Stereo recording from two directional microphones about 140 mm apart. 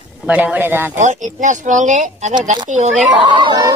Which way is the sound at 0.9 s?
60° right (ahead or behind).